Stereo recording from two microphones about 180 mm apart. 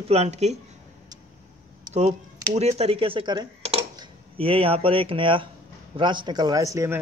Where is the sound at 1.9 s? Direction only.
40° right (ahead or behind); by 3.5 s 25° right (ahead or behind).